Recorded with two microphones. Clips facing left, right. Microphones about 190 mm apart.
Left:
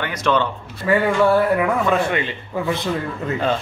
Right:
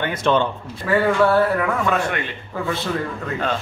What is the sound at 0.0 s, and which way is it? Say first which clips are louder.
Speech: right 1 dB; 25° right (ahead or behind).